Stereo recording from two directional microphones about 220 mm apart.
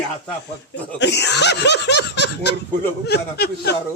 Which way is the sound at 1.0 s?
50° left (ahead or behind).